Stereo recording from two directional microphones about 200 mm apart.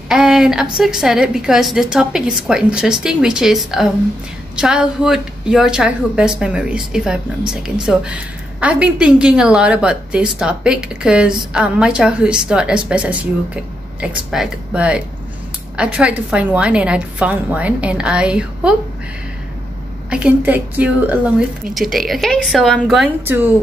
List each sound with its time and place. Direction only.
0.1 s a sound: 5° right (ahead or behind)
0.7 s a woman's voice: 5° right (ahead or behind)
14.3 s a woman's voice: 5° right (ahead or behind)
20.1 s a woman's voice: 5° right (ahead or behind)